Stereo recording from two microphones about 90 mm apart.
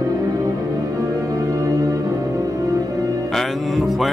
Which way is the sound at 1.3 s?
40° right (ahead or behind).